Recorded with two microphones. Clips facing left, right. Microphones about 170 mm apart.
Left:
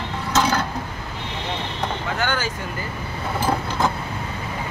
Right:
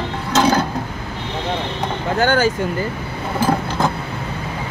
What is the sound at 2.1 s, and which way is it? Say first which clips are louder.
Speech: right 10 dB; 40° right (ahead or behind).